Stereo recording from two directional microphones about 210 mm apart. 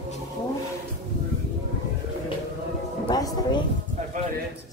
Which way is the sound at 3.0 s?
20° left (ahead or behind).